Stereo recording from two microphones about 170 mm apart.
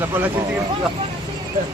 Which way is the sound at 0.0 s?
15° right (ahead or behind).